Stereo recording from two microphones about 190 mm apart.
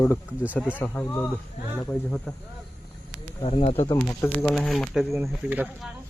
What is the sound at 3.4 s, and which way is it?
Speech, 30° left (ahead or behind).